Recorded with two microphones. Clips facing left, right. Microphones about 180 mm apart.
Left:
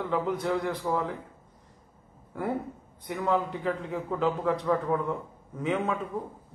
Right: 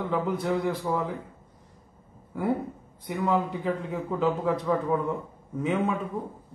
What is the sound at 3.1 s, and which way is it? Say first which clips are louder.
A man's voice: right 1 dB; 10° right (ahead or behind).